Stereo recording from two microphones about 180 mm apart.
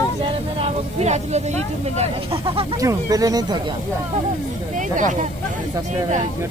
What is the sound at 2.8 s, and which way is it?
Speech, 20° right (ahead or behind).